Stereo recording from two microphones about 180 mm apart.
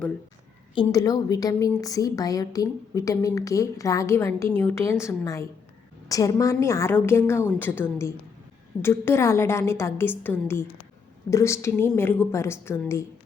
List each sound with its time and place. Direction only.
0.8 s a woman's voice: 20° left (ahead or behind)